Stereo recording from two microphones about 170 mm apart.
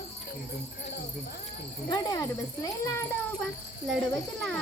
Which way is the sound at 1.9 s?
20° left (ahead or behind).